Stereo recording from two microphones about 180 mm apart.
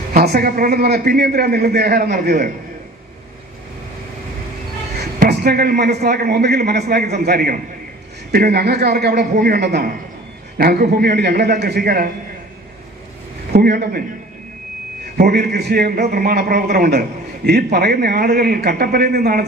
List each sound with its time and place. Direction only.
0.1 s a man's voice: 60° right (ahead or behind)
5.2 s a man's voice: 60° right (ahead or behind)
13.5 s a man's voice: 60° right (ahead or behind)
15.2 s a man's voice: 60° right (ahead or behind)